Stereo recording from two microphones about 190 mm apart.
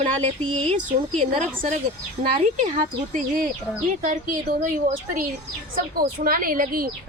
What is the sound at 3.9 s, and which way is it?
A woman's voice, 40° right (ahead or behind).